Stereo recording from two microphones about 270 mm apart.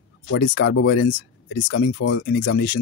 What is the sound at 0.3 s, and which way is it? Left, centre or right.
Speech, left.